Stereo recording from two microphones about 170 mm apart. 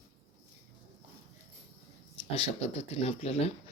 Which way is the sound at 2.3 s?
40° left (ahead or behind).